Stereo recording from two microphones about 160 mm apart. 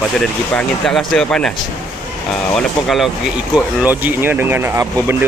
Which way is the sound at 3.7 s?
10° right (ahead or behind).